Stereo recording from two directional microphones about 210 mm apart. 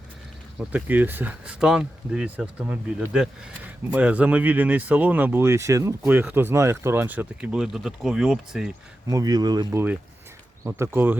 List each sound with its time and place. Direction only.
0.7 s speech: 10° right (ahead or behind)
9.0 s speech: 15° right (ahead or behind)